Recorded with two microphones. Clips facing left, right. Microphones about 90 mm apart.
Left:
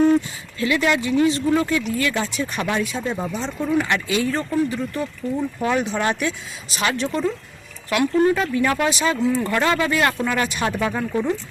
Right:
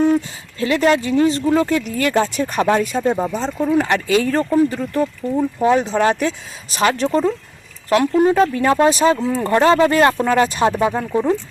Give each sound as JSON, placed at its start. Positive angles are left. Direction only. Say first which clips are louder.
{"t": 0.6, "sound": "speech", "louder": "right 4 dB", "side_deg": -40}
{"t": 3.2, "sound": "speech", "louder": "right 5 dB", "side_deg": -35}
{"t": 5.4, "sound": "speech", "louder": "right 7 dB", "side_deg": -25}
{"t": 8.1, "sound": "speech", "louder": "right 1 dB", "side_deg": -20}
{"t": 8.4, "sound": "speech", "louder": "right 6 dB", "side_deg": -30}